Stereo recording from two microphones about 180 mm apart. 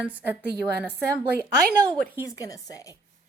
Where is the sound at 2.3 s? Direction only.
20° left (ahead or behind).